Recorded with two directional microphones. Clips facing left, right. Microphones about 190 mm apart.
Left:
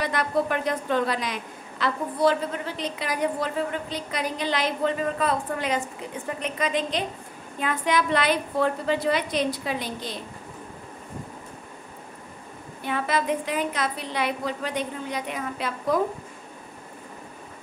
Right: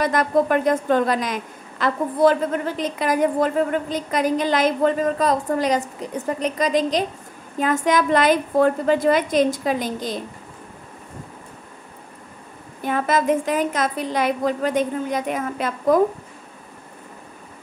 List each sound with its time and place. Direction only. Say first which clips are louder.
0.0 s a woman's voice: right 6 dB; 45° right (ahead or behind)
12.8 s a woman's voice: right 6 dB; 45° right (ahead or behind)